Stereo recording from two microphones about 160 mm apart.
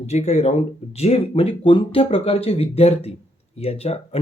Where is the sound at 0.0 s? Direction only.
45° left (ahead or behind).